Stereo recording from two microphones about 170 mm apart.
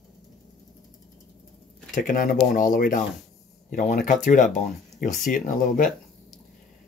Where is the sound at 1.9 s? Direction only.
50° left (ahead or behind).